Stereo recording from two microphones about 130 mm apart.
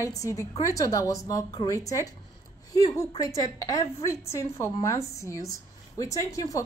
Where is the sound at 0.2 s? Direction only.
25° left (ahead or behind).